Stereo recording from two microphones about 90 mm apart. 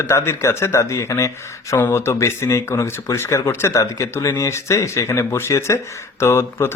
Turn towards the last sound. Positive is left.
turn(degrees=30)  # may be behind; listen again after turning